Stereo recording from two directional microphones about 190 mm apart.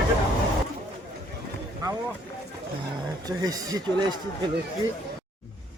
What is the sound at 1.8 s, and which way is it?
Vehicle, 15° right (ahead or behind).